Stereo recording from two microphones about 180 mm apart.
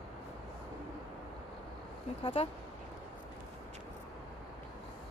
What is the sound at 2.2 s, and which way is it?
Speech, 30° left (ahead or behind).